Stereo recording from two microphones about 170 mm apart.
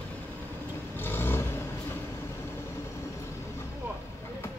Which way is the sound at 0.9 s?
10° left (ahead or behind).